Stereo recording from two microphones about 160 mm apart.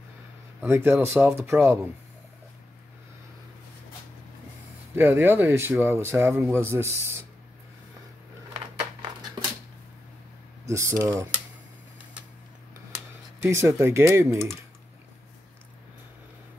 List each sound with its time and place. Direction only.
0.6 s speech: 15° right (ahead or behind)
4.9 s speech: 15° right (ahead or behind)
10.7 s speech: 20° right (ahead or behind)
13.4 s speech: 15° right (ahead or behind)